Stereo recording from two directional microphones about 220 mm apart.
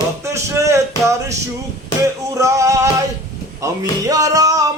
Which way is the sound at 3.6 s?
15° right (ahead or behind).